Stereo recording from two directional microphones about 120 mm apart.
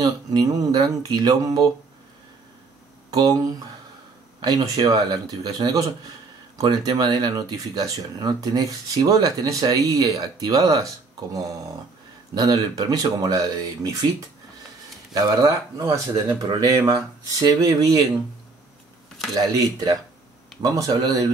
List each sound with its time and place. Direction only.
0.0 s speech: 35° right (ahead or behind)
3.1 s speech: 30° right (ahead or behind)
15.1 s speech: 30° right (ahead or behind)
19.5 s speech: 30° right (ahead or behind)